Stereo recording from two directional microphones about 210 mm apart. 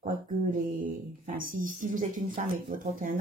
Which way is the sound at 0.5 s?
40° right (ahead or behind).